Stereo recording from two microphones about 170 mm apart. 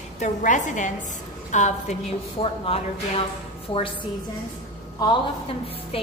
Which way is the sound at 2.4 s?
35° left (ahead or behind).